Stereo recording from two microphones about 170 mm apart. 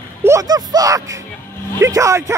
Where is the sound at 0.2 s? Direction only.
20° right (ahead or behind).